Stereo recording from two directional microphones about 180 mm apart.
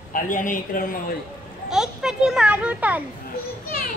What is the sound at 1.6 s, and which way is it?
A child's voice, 5° right (ahead or behind).